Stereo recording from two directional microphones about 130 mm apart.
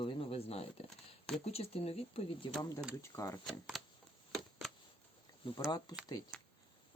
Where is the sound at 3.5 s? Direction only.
Centre (ahead or behind).